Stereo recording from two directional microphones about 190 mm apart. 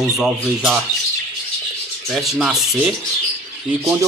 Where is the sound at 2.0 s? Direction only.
Centre (ahead or behind).